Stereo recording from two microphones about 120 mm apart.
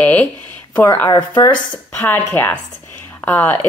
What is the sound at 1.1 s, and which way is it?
Speech, 35° left (ahead or behind).